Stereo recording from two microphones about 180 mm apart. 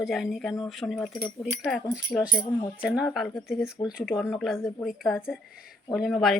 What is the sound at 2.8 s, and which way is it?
Speech, 5° right (ahead or behind).